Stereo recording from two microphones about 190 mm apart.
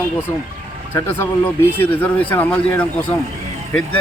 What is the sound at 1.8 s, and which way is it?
Speech, 10° left (ahead or behind).